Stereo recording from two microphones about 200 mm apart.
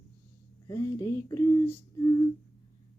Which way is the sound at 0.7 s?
15° left (ahead or behind).